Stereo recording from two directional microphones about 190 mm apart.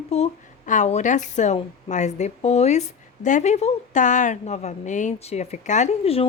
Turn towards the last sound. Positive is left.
turn(degrees=30)  # may be behind; listen again after turning